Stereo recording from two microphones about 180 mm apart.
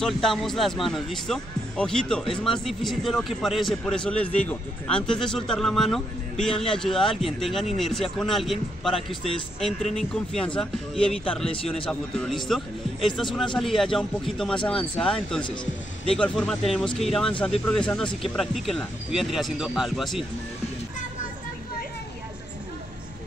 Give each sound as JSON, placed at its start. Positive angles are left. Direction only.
{"t": 0.0, "sound": "a man's voice", "side_deg": 0}
{"t": 8.9, "sound": "speech", "side_deg": 30}
{"t": 9.9, "sound": "a man's voice", "side_deg": 5}